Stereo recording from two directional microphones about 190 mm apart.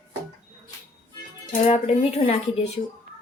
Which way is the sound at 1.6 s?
35° left (ahead or behind).